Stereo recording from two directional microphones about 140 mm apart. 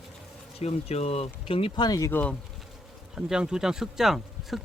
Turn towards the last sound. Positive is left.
turn(degrees=0)  # may be behind; listen again after turning